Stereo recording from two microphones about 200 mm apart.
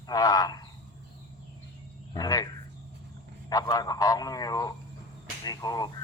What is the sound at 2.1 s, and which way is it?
A man's voice, 20° left (ahead or behind).